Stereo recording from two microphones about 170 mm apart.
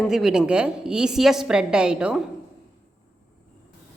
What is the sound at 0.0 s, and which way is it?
A woman's voice, 5° right (ahead or behind).